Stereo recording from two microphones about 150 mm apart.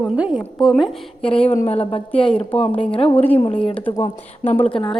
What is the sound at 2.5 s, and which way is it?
Speech, 10° left (ahead or behind).